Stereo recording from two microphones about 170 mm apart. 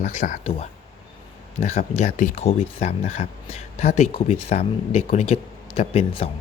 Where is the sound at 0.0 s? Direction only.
45° left (ahead or behind).